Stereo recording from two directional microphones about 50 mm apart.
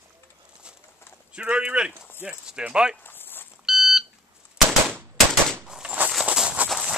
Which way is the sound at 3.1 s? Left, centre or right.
Left.